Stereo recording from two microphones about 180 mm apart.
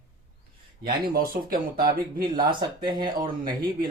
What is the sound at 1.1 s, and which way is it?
Speech, 55° right (ahead or behind).